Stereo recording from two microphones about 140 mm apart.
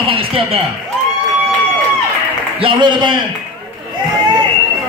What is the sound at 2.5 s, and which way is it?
Speech, 35° right (ahead or behind).